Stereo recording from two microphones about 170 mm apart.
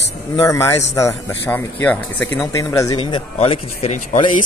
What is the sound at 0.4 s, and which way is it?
A man's voice, 15° left (ahead or behind).